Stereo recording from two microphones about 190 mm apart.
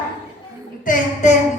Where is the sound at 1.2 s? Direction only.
40° left (ahead or behind).